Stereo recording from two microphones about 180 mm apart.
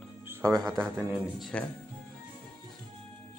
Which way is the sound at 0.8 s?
Centre (ahead or behind).